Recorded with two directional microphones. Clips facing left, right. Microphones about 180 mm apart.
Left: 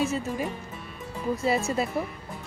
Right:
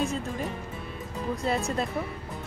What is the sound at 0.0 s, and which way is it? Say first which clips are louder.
Speech: left 2 dB; 5° left (ahead or behind).